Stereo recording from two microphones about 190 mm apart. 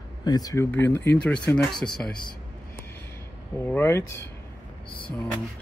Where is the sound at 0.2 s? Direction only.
20° left (ahead or behind); by 2.1 s centre (ahead or behind).